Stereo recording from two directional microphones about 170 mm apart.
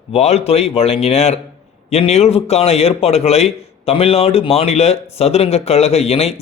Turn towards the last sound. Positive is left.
turn(degrees=35)  # may be behind; listen again after turning